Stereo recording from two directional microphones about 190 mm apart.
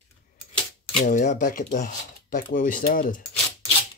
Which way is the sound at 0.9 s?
40° left (ahead or behind).